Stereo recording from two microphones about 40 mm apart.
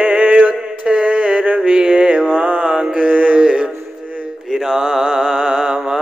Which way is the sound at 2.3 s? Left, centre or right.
Right.